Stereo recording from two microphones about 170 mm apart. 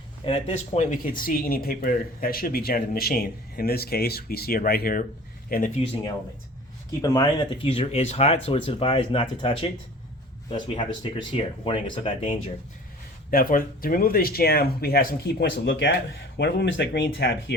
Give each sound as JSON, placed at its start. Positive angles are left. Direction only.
{"t": 0.3, "sound": "speech", "side_deg": 35}
{"t": 7.0, "sound": "speech", "side_deg": 20}
{"t": 7.6, "sound": "speech", "side_deg": 35}
{"t": 11.0, "sound": "speech", "side_deg": 30}
{"t": 13.3, "sound": "speech", "side_deg": 55}